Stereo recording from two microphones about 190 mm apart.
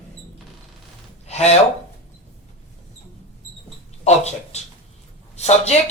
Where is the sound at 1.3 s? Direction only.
35° left (ahead or behind).